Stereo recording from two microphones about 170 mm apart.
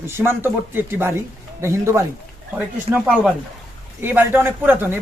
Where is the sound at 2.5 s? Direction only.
5° right (ahead or behind).